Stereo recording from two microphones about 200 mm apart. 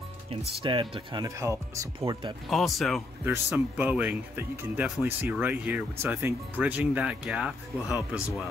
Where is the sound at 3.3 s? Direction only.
10° right (ahead or behind).